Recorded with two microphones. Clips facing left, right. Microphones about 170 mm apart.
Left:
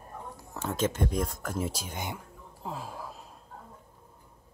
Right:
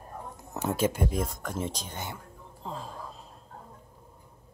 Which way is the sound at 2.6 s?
10° left (ahead or behind).